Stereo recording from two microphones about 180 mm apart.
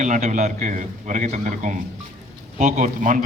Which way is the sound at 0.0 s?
45° right (ahead or behind).